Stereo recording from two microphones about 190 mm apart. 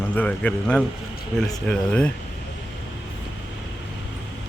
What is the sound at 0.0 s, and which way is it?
Speech, 10° left (ahead or behind).